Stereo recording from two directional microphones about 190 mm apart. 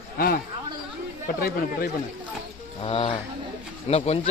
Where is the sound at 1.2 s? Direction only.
50° left (ahead or behind).